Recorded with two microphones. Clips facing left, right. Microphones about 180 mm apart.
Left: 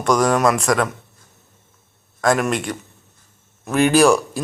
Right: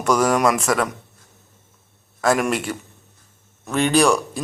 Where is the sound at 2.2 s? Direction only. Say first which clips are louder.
Left 1 dB; 5° right (ahead or behind).